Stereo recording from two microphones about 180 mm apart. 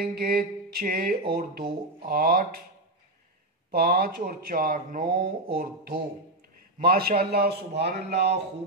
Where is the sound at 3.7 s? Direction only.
55° right (ahead or behind).